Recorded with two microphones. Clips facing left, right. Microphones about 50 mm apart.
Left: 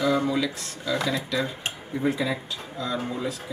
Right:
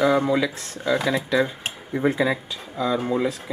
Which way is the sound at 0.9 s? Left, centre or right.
Right.